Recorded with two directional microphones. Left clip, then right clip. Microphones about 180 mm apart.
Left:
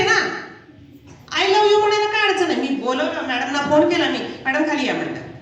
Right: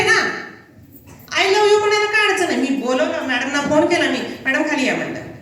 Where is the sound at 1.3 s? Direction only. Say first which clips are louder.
Right 1 dB; 25° left (ahead or behind).